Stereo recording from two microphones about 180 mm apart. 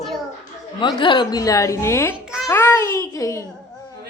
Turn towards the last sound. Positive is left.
turn(degrees=15)  # may be behind; listen again after turning